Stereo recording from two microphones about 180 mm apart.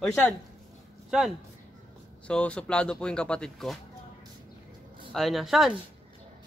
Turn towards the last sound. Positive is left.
turn(degrees=0)  # may be behind; listen again after turning